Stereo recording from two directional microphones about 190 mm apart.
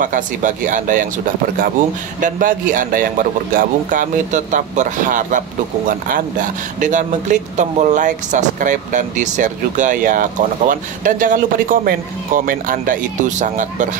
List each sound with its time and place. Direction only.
0.0 s a man's voice: 45° right (ahead or behind)